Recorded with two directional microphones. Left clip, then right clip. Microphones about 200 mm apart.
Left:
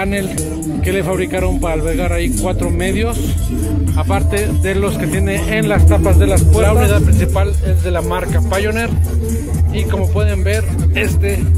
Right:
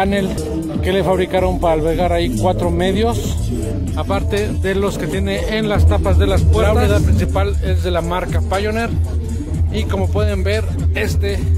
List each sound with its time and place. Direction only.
0.0 s speech: 15° right (ahead or behind)
9.9 s speech: 15° right (ahead or behind)